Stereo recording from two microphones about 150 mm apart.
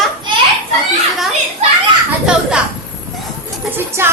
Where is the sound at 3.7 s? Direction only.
15° right (ahead or behind).